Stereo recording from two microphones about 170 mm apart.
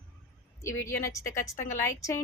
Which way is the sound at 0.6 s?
15° left (ahead or behind).